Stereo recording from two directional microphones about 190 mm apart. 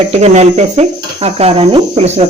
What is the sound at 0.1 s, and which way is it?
Cricket, 35° right (ahead or behind).